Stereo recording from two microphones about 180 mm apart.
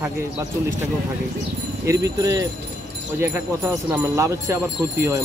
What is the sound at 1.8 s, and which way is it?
Speech, 15° right (ahead or behind).